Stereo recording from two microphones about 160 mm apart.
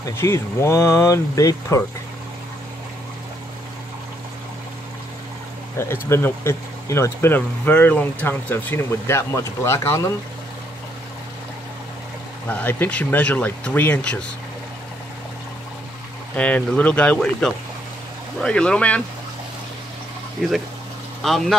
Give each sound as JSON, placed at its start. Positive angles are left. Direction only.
{"t": 0.1, "sound": "speech", "side_deg": 15}
{"t": 5.8, "sound": "speech", "side_deg": 15}
{"t": 12.4, "sound": "speech", "side_deg": 10}
{"t": 16.3, "sound": "speech", "side_deg": 10}
{"t": 20.4, "sound": "speech", "side_deg": 0}